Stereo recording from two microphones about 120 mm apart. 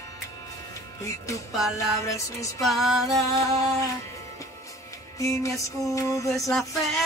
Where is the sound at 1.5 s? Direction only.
Centre (ahead or behind).